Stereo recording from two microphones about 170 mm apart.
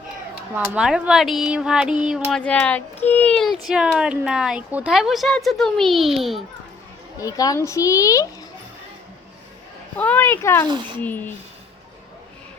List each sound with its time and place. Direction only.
0.5 s speech: 10° right (ahead or behind)
2.4 s speech: 5° left (ahead or behind)
7.2 s speech: 20° left (ahead or behind)
10.0 s speech: 10° left (ahead or behind)